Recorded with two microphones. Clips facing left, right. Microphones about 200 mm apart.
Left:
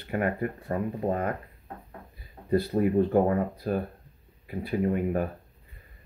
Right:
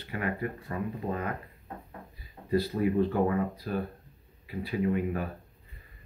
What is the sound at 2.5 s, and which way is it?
Speech, 50° left (ahead or behind).